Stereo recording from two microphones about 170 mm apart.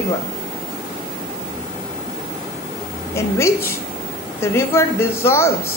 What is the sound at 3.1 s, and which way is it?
Speech, 15° left (ahead or behind).